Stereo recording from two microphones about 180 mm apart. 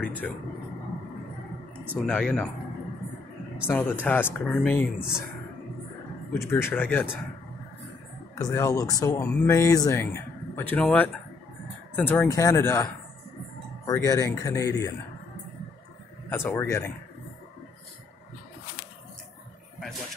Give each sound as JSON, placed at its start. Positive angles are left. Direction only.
{"t": 0.0, "sound": "speech", "side_deg": 10}
{"t": 2.0, "sound": "speech", "side_deg": 5}
{"t": 3.6, "sound": "speech", "side_deg": 5}
{"t": 6.3, "sound": "speech", "side_deg": 15}
{"t": 8.4, "sound": "speech", "side_deg": 15}
{"t": 16.3, "sound": "speech", "side_deg": 10}